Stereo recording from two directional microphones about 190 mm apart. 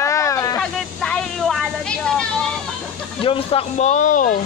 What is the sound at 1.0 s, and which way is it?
Vehicle, centre (ahead or behind).